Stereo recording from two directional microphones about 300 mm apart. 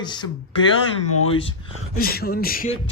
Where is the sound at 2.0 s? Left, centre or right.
Left.